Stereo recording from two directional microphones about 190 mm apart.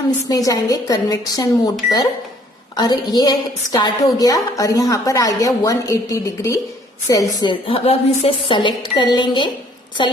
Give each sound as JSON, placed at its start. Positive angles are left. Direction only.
{"t": 0.3, "sound": "a woman's voice", "side_deg": 20}
{"t": 2.7, "sound": "a woman's voice", "side_deg": 20}